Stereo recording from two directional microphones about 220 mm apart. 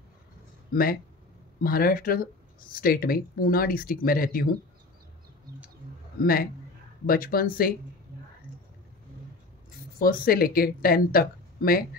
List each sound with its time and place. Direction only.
0.7 s speech: 40° left (ahead or behind)
6.2 s speech: 40° left (ahead or behind)
9.9 s speech: 40° left (ahead or behind)